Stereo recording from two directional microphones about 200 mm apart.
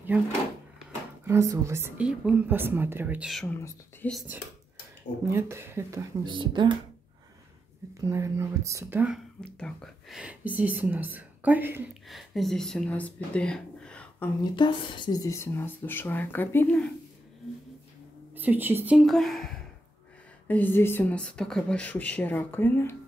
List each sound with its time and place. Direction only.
1.2 s a woman's voice: 15° right (ahead or behind)
3.4 s speech: 10° left (ahead or behind)
5.3 s a woman's voice: 10° right (ahead or behind)
8.1 s a woman's voice: 15° right (ahead or behind)
9.6 s speech: 5° left (ahead or behind)
14.4 s speech: 25° left (ahead or behind)
18.3 s a woman's voice: 10° right (ahead or behind); by 22.9 s 10° left (ahead or behind)